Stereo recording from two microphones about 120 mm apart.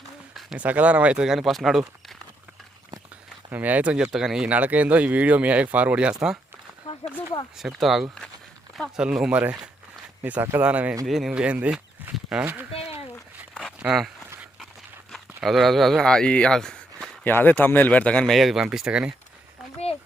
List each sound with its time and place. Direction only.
0.3 s speech: 10° right (ahead or behind)
3.5 s speech: 15° right (ahead or behind)
6.8 s a sound: 60° left (ahead or behind)
7.5 s speech: centre (ahead or behind)
12.7 s a sound: 55° left (ahead or behind)
13.6 s walk: 5° right (ahead or behind)
15.1 s speech: centre (ahead or behind)
17.2 s speech: 15° left (ahead or behind); by 19.1 s 10° right (ahead or behind)